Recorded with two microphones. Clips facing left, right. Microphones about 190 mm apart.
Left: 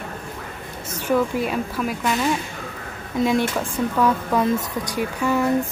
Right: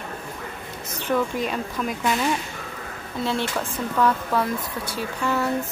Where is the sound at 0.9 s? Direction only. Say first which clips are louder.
Left 3 dB; 10° left (ahead or behind).